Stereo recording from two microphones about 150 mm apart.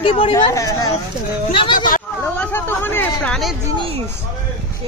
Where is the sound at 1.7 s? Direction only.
65° left (ahead or behind).